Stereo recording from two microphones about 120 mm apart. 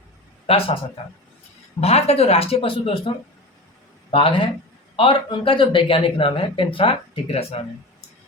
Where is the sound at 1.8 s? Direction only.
60° left (ahead or behind).